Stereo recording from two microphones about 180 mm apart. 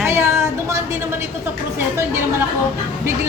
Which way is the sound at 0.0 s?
15° right (ahead or behind).